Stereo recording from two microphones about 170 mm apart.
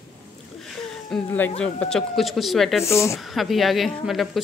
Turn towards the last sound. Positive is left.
turn(degrees=0)  # may be behind; listen again after turning